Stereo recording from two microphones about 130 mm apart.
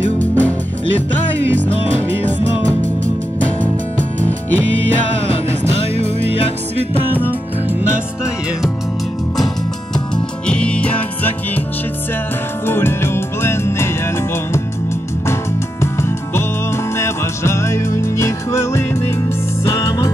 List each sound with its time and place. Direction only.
0.2 s music: 10° left (ahead or behind)
5.3 s music: 45° left (ahead or behind)
10.4 s music: 10° left (ahead or behind)
12.6 s music: 20° left (ahead or behind)
15.8 s music: 20° left (ahead or behind)